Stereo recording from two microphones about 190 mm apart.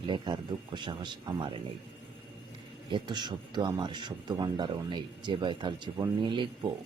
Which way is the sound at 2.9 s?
25° right (ahead or behind).